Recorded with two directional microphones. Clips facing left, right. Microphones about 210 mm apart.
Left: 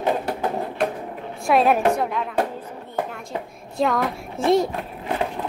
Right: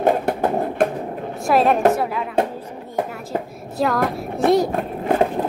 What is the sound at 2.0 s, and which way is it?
Music, 5° right (ahead or behind).